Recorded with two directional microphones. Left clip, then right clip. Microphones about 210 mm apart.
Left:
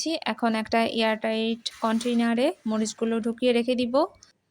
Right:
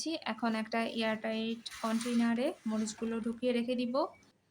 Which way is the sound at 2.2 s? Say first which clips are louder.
Left 9 dB; 35° left (ahead or behind).